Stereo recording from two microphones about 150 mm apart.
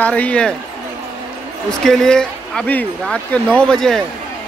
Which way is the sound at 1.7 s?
5° left (ahead or behind).